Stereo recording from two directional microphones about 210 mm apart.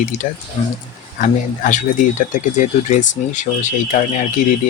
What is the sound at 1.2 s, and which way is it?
Speech, 35° left (ahead or behind).